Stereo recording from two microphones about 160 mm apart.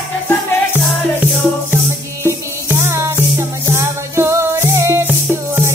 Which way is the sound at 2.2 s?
15° right (ahead or behind).